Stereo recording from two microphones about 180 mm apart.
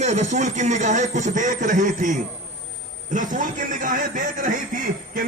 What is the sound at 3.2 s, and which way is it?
Speech, 45° right (ahead or behind).